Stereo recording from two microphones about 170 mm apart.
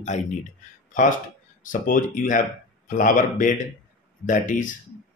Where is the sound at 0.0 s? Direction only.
45° left (ahead or behind).